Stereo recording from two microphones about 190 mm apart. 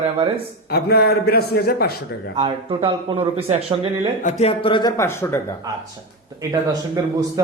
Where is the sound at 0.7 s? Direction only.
55° left (ahead or behind).